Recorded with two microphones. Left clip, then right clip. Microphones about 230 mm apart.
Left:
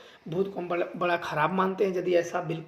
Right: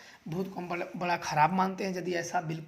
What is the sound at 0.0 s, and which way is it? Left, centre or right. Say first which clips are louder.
Speech: left 8 dB; right.